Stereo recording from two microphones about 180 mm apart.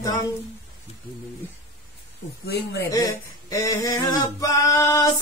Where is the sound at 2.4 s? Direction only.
65° left (ahead or behind).